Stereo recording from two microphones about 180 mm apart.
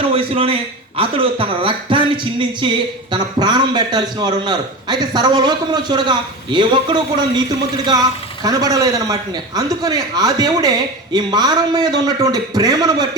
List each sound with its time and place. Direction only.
0.1 s a man's voice: 30° right (ahead or behind)